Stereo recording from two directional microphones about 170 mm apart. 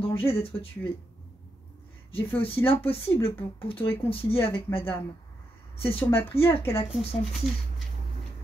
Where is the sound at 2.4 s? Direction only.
30° left (ahead or behind).